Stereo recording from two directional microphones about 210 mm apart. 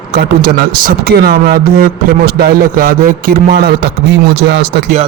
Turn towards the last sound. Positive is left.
turn(degrees=-55)  # may be behind; listen again after turning